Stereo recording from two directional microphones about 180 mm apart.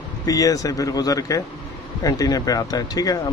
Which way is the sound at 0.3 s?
20° left (ahead or behind).